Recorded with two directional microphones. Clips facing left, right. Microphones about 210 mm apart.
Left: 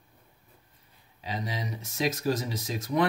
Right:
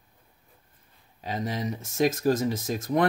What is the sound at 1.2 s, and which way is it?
Speech, 50° right (ahead or behind).